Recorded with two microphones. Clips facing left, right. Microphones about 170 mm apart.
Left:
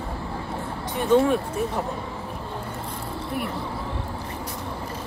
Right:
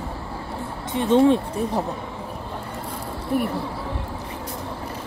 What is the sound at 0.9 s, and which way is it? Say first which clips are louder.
Speech: right 3 dB; 25° right (ahead or behind).